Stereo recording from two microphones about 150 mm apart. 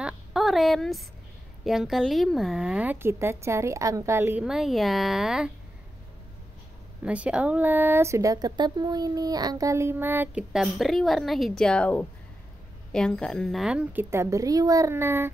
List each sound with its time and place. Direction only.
0.0 s a sound: centre (ahead or behind)
1.6 s a woman's voice: centre (ahead or behind)
4.5 s speech: centre (ahead or behind)
7.1 s speech: 10° right (ahead or behind)
10.5 s a woman's voice: centre (ahead or behind)